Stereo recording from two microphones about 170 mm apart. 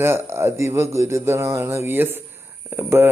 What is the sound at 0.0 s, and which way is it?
Speech, 15° right (ahead or behind).